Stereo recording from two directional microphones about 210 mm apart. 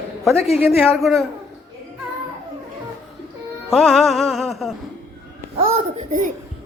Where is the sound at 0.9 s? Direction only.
Centre (ahead or behind).